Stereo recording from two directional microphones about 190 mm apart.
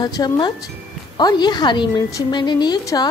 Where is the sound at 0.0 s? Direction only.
20° left (ahead or behind).